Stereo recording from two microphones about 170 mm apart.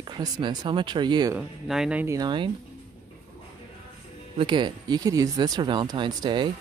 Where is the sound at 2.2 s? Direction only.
25° right (ahead or behind).